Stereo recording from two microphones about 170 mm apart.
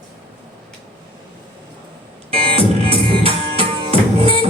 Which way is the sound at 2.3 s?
35° right (ahead or behind).